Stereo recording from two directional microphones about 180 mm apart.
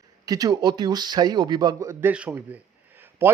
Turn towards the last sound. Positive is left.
turn(degrees=-10)  # may be behind; listen again after turning